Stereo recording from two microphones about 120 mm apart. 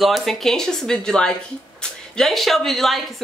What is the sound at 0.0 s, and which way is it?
Speech, centre (ahead or behind).